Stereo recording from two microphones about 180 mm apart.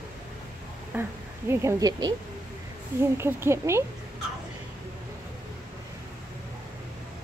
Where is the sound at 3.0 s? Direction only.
15° right (ahead or behind).